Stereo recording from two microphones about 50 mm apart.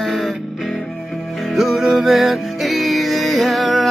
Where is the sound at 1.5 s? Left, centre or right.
Centre.